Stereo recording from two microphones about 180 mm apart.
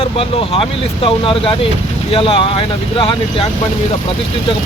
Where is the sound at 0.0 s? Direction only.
30° left (ahead or behind).